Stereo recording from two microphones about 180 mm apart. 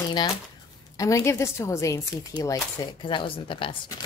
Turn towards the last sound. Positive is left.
turn(degrees=30)  # may be behind; listen again after turning